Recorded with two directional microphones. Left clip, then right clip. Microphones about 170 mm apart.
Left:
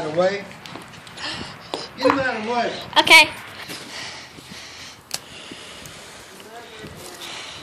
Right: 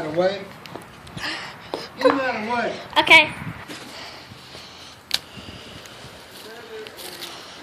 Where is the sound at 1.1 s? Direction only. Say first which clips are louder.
Right 1 dB; 5° right (ahead or behind).